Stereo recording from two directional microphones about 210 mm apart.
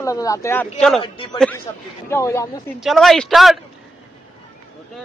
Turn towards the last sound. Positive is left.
turn(degrees=0)  # may be behind; listen again after turning